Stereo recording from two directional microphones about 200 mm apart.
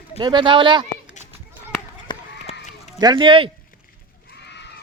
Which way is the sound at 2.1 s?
35° left (ahead or behind).